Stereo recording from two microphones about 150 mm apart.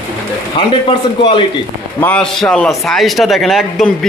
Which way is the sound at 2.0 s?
10° left (ahead or behind).